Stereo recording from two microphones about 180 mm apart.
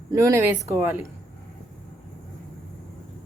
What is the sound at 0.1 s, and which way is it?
Speech, 15° right (ahead or behind).